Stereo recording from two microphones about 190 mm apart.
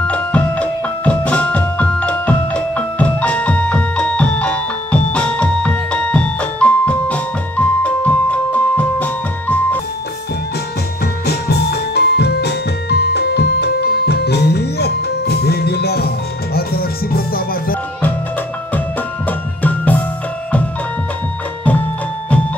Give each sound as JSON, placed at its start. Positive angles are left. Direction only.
{"t": 0.0, "sound": "music", "side_deg": 5}
{"t": 11.2, "sound": "music", "side_deg": 60}
{"t": 19.2, "sound": "music", "side_deg": 10}